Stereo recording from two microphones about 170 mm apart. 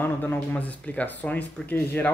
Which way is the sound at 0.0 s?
10° left (ahead or behind).